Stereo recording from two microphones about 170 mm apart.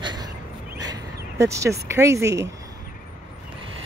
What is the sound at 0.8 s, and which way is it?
Speech, 20° right (ahead or behind).